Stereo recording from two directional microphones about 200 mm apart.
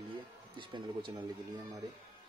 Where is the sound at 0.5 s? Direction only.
20° right (ahead or behind).